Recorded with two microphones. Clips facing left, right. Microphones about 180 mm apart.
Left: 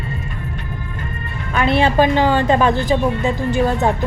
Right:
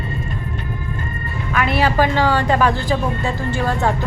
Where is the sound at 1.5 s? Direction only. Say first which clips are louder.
Left 3 dB; 25° left (ahead or behind).